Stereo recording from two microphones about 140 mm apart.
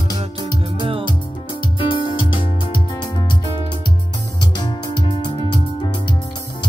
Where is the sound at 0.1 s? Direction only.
30° left (ahead or behind).